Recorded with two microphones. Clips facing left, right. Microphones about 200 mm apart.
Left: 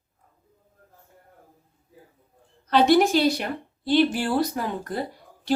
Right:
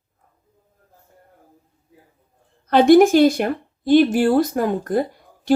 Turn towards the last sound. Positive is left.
turn(degrees=-50)  # may be behind; listen again after turning